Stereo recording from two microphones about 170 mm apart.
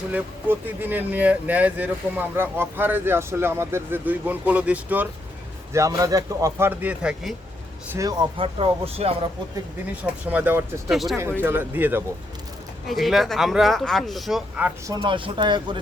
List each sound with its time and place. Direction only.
0.1 s speech: 10° right (ahead or behind)
5.7 s speech: 20° right (ahead or behind)
7.9 s speech: 25° right (ahead or behind)
9.9 s speech: 10° right (ahead or behind)
11.4 s speech: 10° right (ahead or behind)
12.9 s speech: centre (ahead or behind)
14.8 s speech: 25° right (ahead or behind)